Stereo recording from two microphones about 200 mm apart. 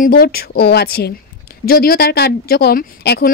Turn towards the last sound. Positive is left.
turn(degrees=50)  # may be behind; listen again after turning